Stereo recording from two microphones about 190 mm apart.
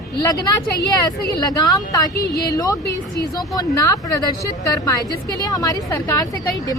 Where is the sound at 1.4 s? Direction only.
20° left (ahead or behind).